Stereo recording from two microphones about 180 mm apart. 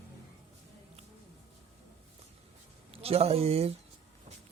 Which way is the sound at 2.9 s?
35° right (ahead or behind).